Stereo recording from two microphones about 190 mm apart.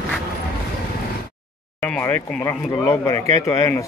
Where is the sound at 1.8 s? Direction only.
10° left (ahead or behind).